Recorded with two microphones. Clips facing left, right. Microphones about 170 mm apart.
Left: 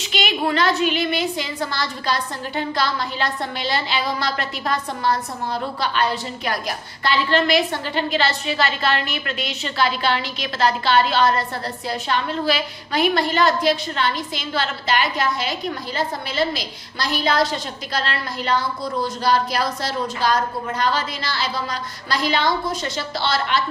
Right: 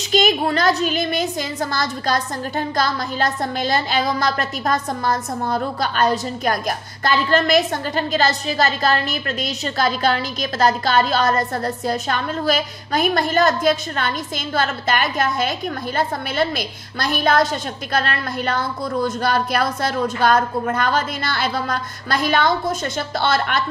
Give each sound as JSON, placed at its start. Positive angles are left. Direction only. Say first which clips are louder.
{"t": 0.1, "sound": "a woman's voice", "louder": "right 4 dB", "side_deg": -40}